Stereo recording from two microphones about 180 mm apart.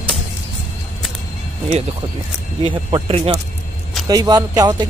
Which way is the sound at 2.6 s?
30° right (ahead or behind).